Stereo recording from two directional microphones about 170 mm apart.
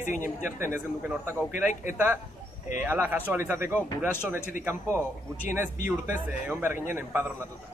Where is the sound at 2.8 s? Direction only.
10° right (ahead or behind).